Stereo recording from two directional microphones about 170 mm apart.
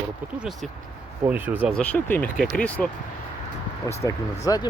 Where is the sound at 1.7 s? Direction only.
10° left (ahead or behind).